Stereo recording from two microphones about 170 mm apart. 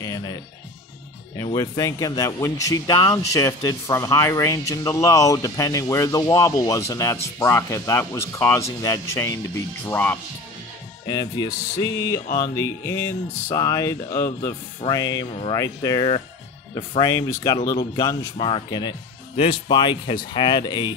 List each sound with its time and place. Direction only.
0.0 s speech: 20° left (ahead or behind)
11.1 s speech: 25° left (ahead or behind)